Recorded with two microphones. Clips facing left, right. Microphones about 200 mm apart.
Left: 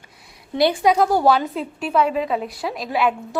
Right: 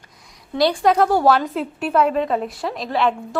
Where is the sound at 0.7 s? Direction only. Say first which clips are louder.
Right 2 dB; 5° left (ahead or behind).